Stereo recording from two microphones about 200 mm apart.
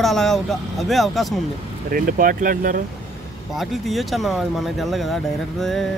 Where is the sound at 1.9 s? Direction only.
45° right (ahead or behind).